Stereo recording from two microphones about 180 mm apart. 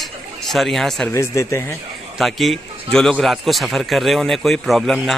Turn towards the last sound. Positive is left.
turn(degrees=0)  # may be behind; listen again after turning